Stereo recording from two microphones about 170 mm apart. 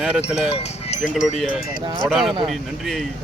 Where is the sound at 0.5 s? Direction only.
35° left (ahead or behind).